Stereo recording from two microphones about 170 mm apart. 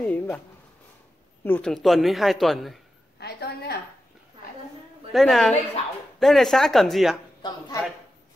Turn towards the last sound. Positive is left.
turn(degrees=20)  # may be behind; listen again after turning